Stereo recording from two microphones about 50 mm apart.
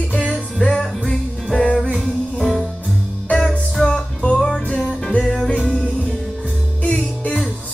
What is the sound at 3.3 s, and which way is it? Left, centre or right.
Music, centre.